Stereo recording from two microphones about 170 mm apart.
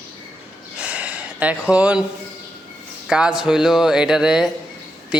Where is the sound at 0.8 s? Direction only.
10° right (ahead or behind).